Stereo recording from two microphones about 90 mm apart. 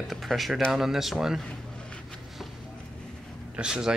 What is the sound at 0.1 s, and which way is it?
Speech, centre (ahead or behind).